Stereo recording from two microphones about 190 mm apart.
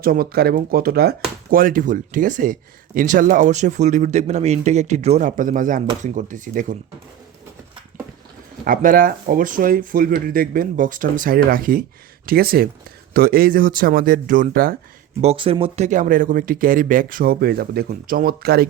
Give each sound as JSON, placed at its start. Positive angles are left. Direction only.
{"t": 0.0, "sound": "speech", "side_deg": -55}
{"t": 8.6, "sound": "speech", "side_deg": -45}
{"t": 15.2, "sound": "speech", "side_deg": -30}